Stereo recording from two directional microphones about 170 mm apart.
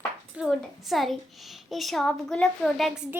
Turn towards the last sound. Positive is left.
turn(degrees=0)  # may be behind; listen again after turning